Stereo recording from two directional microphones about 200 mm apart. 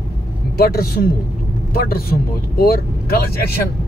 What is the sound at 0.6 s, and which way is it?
Speech, 50° left (ahead or behind).